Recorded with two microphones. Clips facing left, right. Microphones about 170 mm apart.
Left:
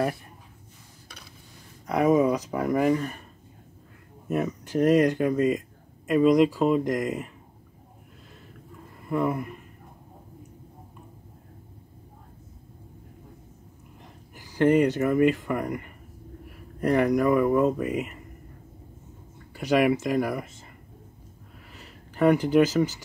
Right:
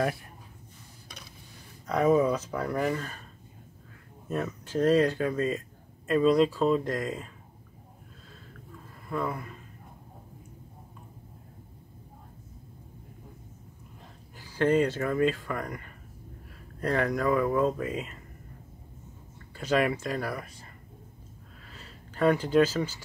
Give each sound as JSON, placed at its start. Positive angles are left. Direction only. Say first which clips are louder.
{"t": 1.9, "sound": "speech", "louder": "left 2 dB", "side_deg": 15}
{"t": 4.3, "sound": "speech", "louder": "left 5 dB", "side_deg": 15}
{"t": 9.0, "sound": "speech", "louder": "left 6 dB", "side_deg": 20}
{"t": 14.3, "sound": "speech", "louder": "left 4 dB", "side_deg": 15}
{"t": 19.5, "sound": "speech", "louder": "left 5 dB", "side_deg": 15}
{"t": 21.7, "sound": "speech", "louder": "left 4 dB", "side_deg": 15}